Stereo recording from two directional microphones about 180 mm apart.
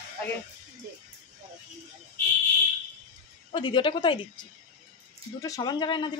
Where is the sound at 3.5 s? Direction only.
25° left (ahead or behind).